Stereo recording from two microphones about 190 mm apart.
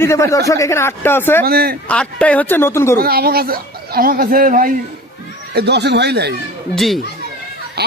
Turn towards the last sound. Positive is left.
turn(degrees=-60)  # may be behind; listen again after turning